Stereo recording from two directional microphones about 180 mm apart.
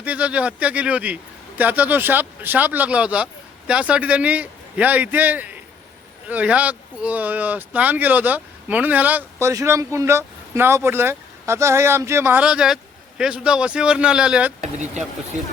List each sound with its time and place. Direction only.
0.0 s speech: 5° right (ahead or behind)
14.6 s speech: 40° right (ahead or behind)